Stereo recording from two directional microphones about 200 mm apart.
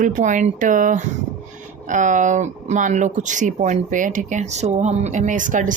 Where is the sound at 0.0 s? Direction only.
40° right (ahead or behind).